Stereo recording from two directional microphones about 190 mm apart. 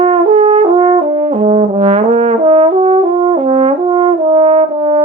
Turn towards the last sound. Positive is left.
turn(degrees=-35)  # may be behind; listen again after turning